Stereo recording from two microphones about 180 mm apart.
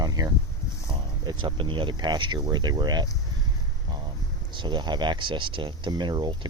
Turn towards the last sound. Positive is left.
turn(degrees=-25)  # may be behind; listen again after turning